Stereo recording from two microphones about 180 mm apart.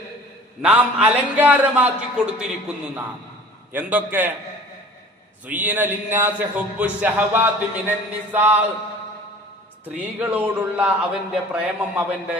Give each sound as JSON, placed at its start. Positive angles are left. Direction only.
{"t": 0.6, "sound": "speech", "side_deg": -10}
{"t": 3.7, "sound": "speech", "side_deg": -10}
{"t": 5.5, "sound": "speech", "side_deg": -10}
{"t": 9.8, "sound": "speech", "side_deg": -10}